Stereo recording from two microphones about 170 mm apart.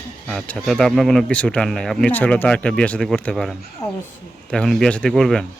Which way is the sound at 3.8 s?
20° left (ahead or behind).